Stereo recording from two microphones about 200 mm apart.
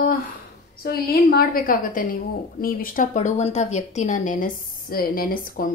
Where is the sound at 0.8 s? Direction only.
50° left (ahead or behind).